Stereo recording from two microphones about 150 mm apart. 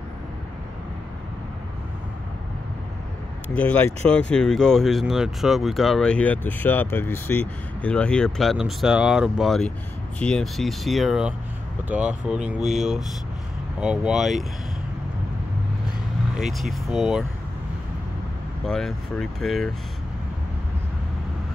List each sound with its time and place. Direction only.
3.5 s speech: 10° left (ahead or behind); by 12.4 s 5° right (ahead or behind)
13.7 s speech: 5° right (ahead or behind)
16.3 s speech: centre (ahead or behind)
18.7 s speech: 5° left (ahead or behind)